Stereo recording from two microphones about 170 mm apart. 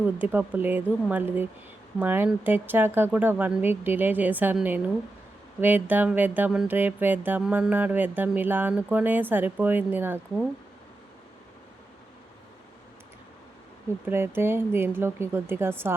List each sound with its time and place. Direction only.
0.0 s speech: 10° right (ahead or behind)
14.1 s speech: 15° right (ahead or behind)